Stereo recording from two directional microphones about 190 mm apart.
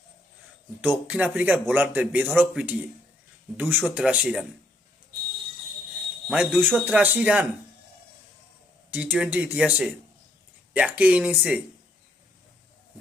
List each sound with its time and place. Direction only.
0.8 s speech: 10° right (ahead or behind)
6.2 s speech: 5° right (ahead or behind)
8.9 s speech: 5° right (ahead or behind)